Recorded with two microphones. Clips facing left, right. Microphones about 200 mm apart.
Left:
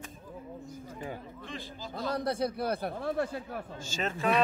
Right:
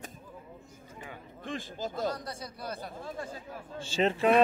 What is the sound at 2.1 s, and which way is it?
Speech, 60° left (ahead or behind).